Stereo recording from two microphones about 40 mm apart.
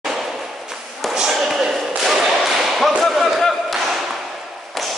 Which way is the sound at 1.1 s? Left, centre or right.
Centre.